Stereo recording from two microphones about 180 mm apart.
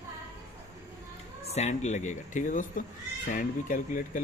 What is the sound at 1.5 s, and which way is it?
Speech, 40° left (ahead or behind).